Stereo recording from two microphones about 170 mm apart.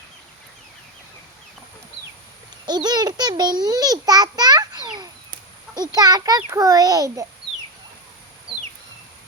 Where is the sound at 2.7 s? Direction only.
25° right (ahead or behind).